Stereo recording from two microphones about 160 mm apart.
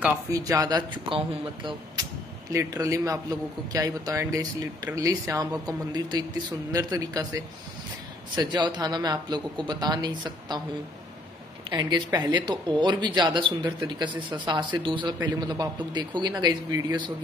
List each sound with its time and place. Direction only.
0.0 s a man's voice: 15° right (ahead or behind)
2.5 s a man's voice: 20° right (ahead or behind)
8.4 s a man's voice: 30° right (ahead or behind)
11.7 s a man's voice: 25° right (ahead or behind)